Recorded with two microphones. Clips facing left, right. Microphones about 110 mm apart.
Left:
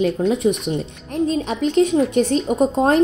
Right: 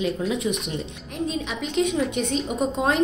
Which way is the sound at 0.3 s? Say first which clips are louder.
Left 7 dB; 50° left (ahead or behind).